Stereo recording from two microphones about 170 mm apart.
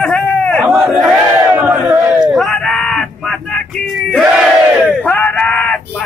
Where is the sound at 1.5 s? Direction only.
10° right (ahead or behind).